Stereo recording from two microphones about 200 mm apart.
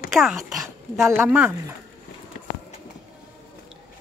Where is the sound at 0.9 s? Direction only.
15° right (ahead or behind).